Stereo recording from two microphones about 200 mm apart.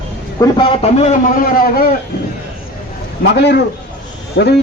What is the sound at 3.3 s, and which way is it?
A man's voice, 55° left (ahead or behind).